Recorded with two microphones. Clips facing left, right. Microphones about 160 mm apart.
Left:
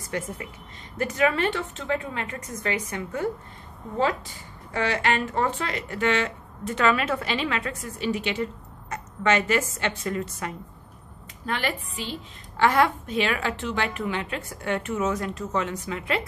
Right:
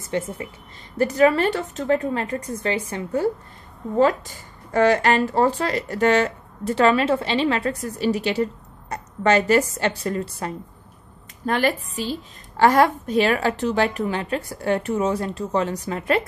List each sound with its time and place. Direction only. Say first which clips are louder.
0.0 s a woman's voice: right 5 dB; 25° right (ahead or behind)
4.7 s a woman's voice: right 7 dB; 45° right (ahead or behind)